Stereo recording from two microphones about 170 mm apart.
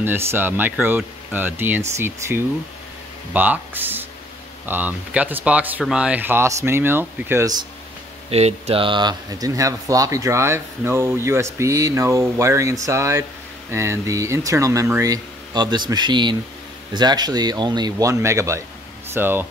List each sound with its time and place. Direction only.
0.0 s speech: 15° right (ahead or behind)
8.3 s speech: 40° right (ahead or behind); by 19.4 s 10° right (ahead or behind)